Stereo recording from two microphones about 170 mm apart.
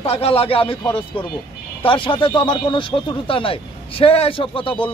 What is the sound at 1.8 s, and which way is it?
Speech, 30° left (ahead or behind).